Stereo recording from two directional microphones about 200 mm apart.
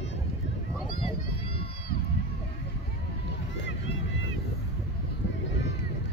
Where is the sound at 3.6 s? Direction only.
60° left (ahead or behind).